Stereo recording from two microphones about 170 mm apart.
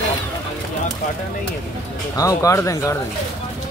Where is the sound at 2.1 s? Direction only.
20° left (ahead or behind).